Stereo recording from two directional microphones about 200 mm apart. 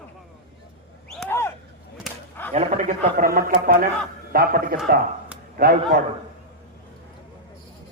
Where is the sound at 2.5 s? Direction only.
35° right (ahead or behind).